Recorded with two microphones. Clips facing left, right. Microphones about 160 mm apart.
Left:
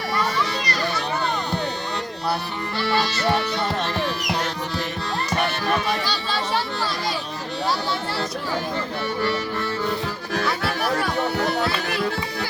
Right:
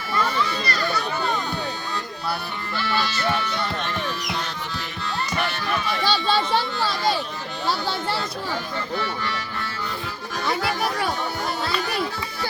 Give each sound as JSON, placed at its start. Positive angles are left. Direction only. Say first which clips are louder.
{"t": 2.8, "sound": "music", "louder": "left 3 dB", "side_deg": 35}
{"t": 6.1, "sound": "children playing", "louder": "right 5 dB", "side_deg": -25}
{"t": 11.3, "sound": "music", "louder": "left 5 dB", "side_deg": 65}